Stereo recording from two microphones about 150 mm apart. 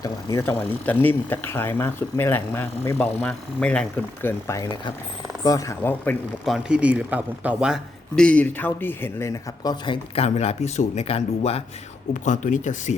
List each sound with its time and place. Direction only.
0.0 s speech: 20° left (ahead or behind)
6.4 s speech: 5° right (ahead or behind); by 9.7 s 20° left (ahead or behind)
9.8 s speech: 35° left (ahead or behind)
10.2 s speech: 45° left (ahead or behind)
12.1 s speech: 55° left (ahead or behind)